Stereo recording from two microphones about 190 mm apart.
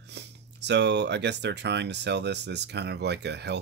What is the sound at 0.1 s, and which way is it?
Speech, 65° right (ahead or behind).